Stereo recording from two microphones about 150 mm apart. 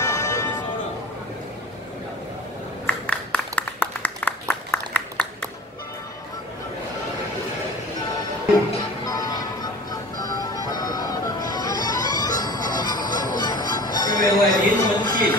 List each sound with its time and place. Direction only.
0.0 s music: 20° left (ahead or behind)
2.9 s a sound: 10° left (ahead or behind)
9.0 s music: 25° left (ahead or behind)